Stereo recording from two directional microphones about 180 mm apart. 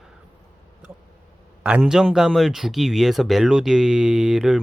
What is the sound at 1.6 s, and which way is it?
Speech, 5° right (ahead or behind).